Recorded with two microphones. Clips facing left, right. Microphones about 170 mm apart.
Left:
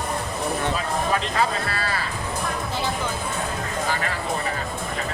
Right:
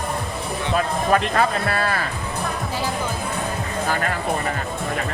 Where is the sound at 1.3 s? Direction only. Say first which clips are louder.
Right 3 dB; 55° right (ahead or behind).